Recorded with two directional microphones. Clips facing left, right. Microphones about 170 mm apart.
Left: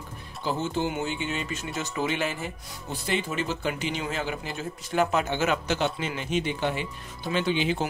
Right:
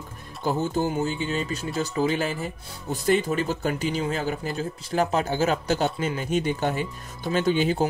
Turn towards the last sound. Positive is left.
turn(degrees=-40)  # may be behind; listen again after turning